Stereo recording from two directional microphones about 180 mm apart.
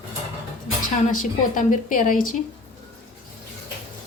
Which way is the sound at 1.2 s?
50° left (ahead or behind).